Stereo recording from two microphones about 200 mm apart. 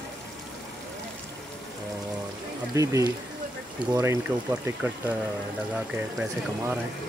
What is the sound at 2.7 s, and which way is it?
Speech, 15° right (ahead or behind).